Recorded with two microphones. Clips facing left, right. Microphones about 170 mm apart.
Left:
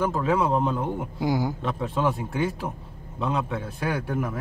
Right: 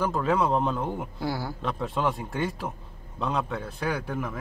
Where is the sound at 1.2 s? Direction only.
15° left (ahead or behind).